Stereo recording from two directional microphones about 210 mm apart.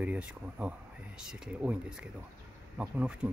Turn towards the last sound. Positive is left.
turn(degrees=-5)  # may be behind; listen again after turning